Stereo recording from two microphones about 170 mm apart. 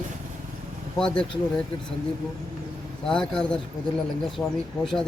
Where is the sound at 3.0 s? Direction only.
5° left (ahead or behind).